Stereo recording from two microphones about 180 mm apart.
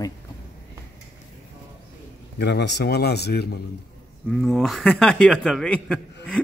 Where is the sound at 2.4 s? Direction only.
70° left (ahead or behind).